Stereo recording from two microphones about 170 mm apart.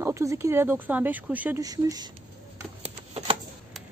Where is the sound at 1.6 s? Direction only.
20° right (ahead or behind).